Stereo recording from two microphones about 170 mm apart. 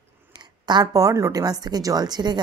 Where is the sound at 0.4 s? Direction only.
25° right (ahead or behind).